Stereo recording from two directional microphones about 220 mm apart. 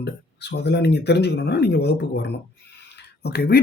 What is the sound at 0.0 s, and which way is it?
Speech, 50° left (ahead or behind).